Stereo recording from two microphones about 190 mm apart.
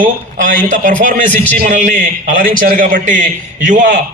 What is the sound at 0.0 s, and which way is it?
A man's voice, 45° right (ahead or behind).